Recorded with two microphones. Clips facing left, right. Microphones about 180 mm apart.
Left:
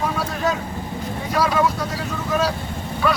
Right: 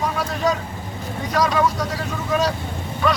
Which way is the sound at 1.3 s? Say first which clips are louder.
Even; 5° left (ahead or behind).